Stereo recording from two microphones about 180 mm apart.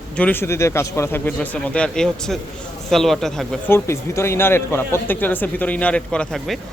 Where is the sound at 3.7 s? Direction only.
15° left (ahead or behind).